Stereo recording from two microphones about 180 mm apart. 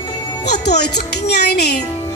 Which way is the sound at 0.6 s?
65° left (ahead or behind).